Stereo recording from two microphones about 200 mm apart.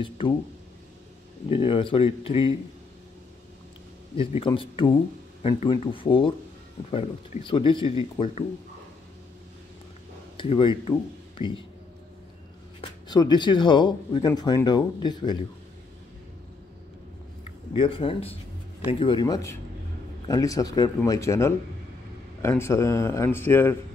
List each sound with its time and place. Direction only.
0.2 s speech: 25° left (ahead or behind)
1.5 s speech: 25° left (ahead or behind)
4.2 s speech: 25° left (ahead or behind)
10.3 s speech: 25° left (ahead or behind)
12.8 s speech: 20° left (ahead or behind)
17.7 s a man's voice: 25° left (ahead or behind); by 23.8 s 10° left (ahead or behind)